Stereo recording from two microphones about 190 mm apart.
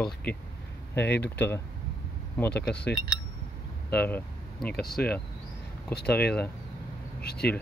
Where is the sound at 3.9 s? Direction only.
10° left (ahead or behind).